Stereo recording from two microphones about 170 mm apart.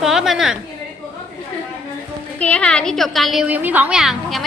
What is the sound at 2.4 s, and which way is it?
A woman's voice, 5° left (ahead or behind).